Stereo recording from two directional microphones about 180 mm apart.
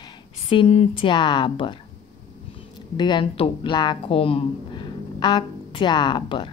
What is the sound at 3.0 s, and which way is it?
Speech, 25° left (ahead or behind).